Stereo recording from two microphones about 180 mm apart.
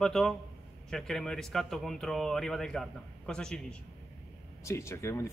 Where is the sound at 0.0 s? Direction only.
5° left (ahead or behind).